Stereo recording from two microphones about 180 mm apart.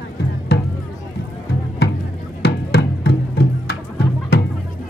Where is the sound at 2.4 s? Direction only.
60° left (ahead or behind).